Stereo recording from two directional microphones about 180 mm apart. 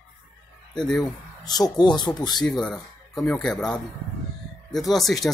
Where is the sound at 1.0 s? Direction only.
20° left (ahead or behind).